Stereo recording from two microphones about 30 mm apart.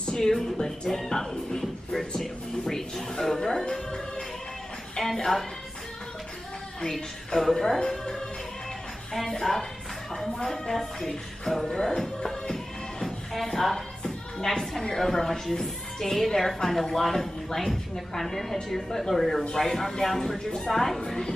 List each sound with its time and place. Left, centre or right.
0.2 s a woman's voice: centre
7.3 s speech: centre
9.1 s speech: centre
12.2 s music: centre
13.3 s speech: centre
13.7 s speech: centre